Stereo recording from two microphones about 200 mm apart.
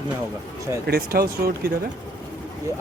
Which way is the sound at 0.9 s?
50° right (ahead or behind).